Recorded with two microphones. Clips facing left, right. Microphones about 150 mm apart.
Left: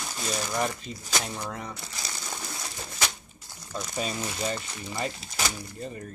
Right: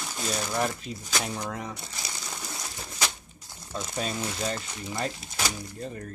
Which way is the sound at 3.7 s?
Centre (ahead or behind).